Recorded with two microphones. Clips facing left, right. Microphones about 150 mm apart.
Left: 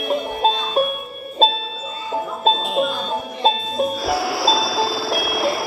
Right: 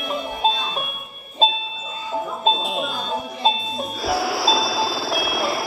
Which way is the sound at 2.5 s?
Centre (ahead or behind).